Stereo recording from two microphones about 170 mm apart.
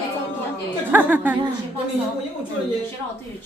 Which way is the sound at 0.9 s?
10° right (ahead or behind).